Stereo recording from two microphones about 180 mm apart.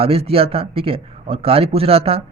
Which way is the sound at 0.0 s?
30° right (ahead or behind).